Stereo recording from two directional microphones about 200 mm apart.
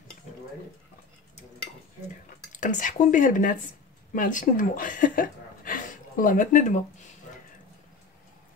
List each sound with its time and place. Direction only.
2.6 s speech: 40° left (ahead or behind)